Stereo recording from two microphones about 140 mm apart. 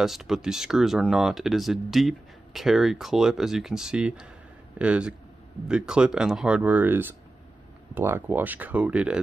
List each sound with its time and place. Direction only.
0.0 s speech: centre (ahead or behind)